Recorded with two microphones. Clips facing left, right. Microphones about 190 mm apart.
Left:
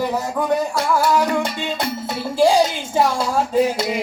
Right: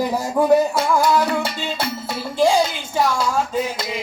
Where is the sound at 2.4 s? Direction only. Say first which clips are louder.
Left 2 dB; 35° left (ahead or behind).